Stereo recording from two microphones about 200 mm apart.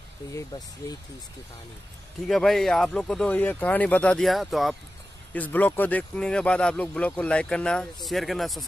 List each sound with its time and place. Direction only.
0.5 s speech: 20° left (ahead or behind)
2.2 s speech: centre (ahead or behind)